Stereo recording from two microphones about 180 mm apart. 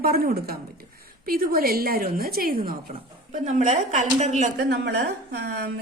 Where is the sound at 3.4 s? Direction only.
40° right (ahead or behind).